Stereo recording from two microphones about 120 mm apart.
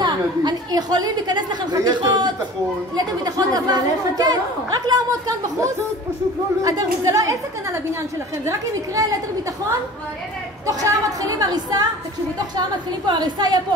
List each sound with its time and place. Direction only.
0.0 s a woman's voice: 35° right (ahead or behind)
3.3 s a woman's voice: 35° right (ahead or behind)
6.6 s speech: 30° right (ahead or behind)
8.5 s speech: 30° right (ahead or behind)
10.7 s a woman's voice: 30° right (ahead or behind)